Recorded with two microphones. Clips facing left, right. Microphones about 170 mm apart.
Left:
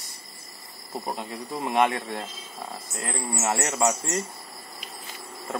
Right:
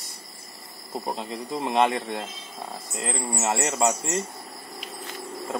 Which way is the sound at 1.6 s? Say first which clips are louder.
Right 1 dB; 25° right (ahead or behind).